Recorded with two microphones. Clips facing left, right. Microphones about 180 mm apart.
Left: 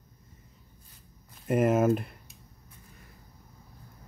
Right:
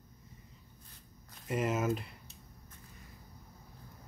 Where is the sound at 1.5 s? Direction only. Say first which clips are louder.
Left 9 dB; 55° left (ahead or behind).